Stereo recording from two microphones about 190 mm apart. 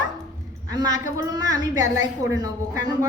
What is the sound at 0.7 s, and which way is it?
A woman's voice, 20° right (ahead or behind).